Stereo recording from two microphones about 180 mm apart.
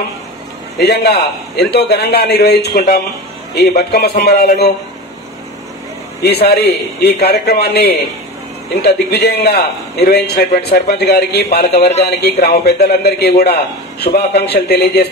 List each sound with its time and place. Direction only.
0.7 s a man's voice: 65° left (ahead or behind)
6.2 s a man's voice: 65° left (ahead or behind)